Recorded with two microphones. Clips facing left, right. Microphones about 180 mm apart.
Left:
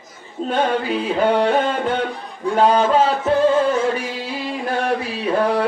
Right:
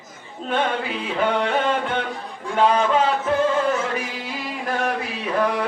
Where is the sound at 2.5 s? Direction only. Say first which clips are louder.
Left 3 dB; 35° left (ahead or behind).